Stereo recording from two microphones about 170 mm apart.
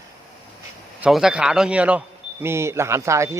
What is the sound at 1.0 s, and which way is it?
Speech, 5° right (ahead or behind).